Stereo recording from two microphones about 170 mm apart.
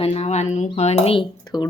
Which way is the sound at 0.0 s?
35° left (ahead or behind).